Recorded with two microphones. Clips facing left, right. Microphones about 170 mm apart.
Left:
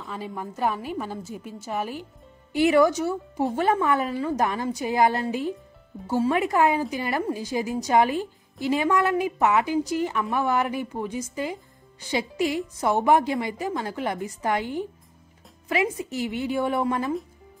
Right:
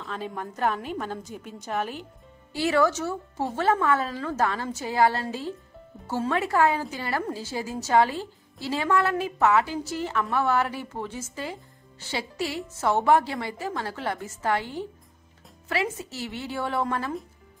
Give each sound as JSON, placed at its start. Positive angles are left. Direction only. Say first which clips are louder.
{"t": 0.0, "sound": "speech", "louder": "even", "side_deg": 5}